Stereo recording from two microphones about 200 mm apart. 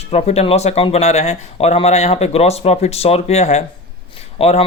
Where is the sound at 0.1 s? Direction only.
30° left (ahead or behind).